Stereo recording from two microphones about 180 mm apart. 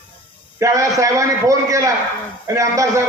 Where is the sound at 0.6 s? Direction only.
15° right (ahead or behind).